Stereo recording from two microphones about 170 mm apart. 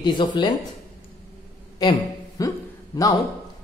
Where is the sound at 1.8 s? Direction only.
20° left (ahead or behind).